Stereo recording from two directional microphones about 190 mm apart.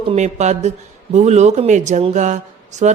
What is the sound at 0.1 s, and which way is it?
Speech, 35° right (ahead or behind).